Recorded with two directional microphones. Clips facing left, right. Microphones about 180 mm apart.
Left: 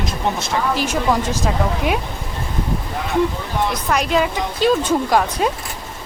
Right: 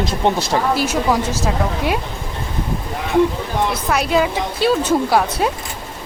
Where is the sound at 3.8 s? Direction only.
5° right (ahead or behind).